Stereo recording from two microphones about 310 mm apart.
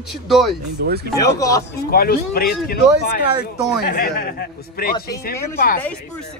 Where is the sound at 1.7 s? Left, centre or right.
Left.